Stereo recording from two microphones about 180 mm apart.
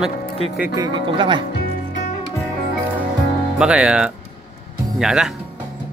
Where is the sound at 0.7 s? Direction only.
25° right (ahead or behind).